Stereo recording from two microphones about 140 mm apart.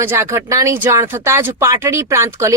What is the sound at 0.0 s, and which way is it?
Speech, 20° right (ahead or behind).